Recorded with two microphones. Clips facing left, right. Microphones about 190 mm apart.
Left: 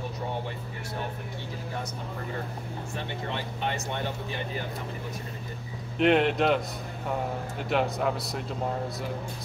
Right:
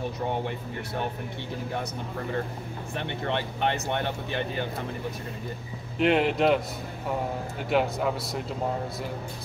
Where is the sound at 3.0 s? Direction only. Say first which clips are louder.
Right 5 dB; 65° right (ahead or behind).